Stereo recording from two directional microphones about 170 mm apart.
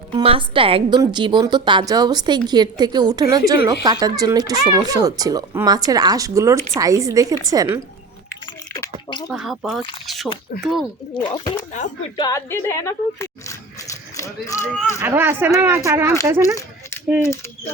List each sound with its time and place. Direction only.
0.1 s speech: 30° right (ahead or behind)
9.0 s speech: 25° left (ahead or behind)
9.3 s speech: centre (ahead or behind)
10.1 s drip: centre (ahead or behind)
10.6 s speech: centre (ahead or behind)
11.1 s speech: 25° left (ahead or behind)
15.0 s speech: 15° right (ahead or behind)
17.2 s speech: 15° left (ahead or behind)